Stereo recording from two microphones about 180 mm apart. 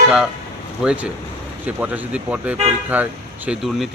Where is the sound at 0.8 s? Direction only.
5° right (ahead or behind).